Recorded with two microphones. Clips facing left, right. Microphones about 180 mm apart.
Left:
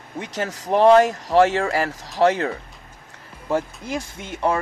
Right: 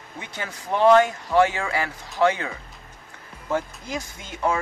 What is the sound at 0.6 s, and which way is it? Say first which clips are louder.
Speech: left 3 dB; 35° left (ahead or behind).